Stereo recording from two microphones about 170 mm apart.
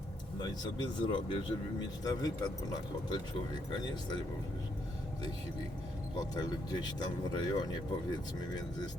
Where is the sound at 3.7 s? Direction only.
25° left (ahead or behind).